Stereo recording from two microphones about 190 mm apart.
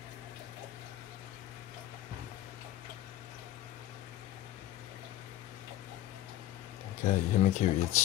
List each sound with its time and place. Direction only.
7.1 s speech: 40° left (ahead or behind)